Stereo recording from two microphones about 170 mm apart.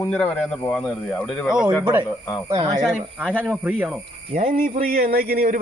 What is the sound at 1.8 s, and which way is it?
Speech, 15° right (ahead or behind).